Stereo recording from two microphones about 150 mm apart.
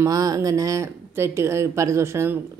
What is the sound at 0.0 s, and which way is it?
Speech, 25° right (ahead or behind).